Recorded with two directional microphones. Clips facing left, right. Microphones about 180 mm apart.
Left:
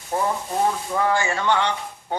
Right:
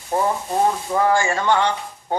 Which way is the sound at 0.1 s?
35° right (ahead or behind).